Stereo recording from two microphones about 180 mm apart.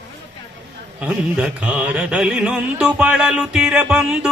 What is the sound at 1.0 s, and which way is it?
Music, 5° right (ahead or behind).